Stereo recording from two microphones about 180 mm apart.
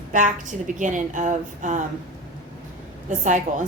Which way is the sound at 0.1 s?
45° right (ahead or behind).